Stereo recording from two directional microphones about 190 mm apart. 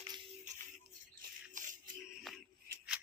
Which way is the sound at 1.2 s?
45° right (ahead or behind).